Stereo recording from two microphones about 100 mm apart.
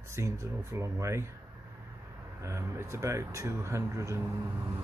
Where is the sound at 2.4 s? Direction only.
30° right (ahead or behind).